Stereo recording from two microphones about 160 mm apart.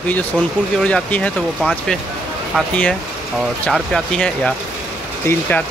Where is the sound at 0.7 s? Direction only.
5° left (ahead or behind).